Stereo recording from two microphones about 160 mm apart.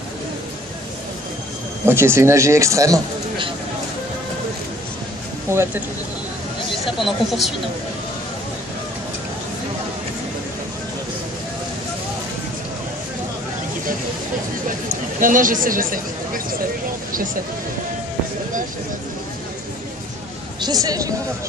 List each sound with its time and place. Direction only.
1.9 s speech: 15° right (ahead or behind)
5.5 s speech: 15° right (ahead or behind)
7.0 s speech: centre (ahead or behind)
14.9 s speech: 55° right (ahead or behind)
20.6 s speech: 25° right (ahead or behind)